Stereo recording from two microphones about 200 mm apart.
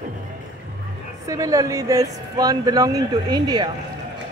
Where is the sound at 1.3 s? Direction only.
15° right (ahead or behind).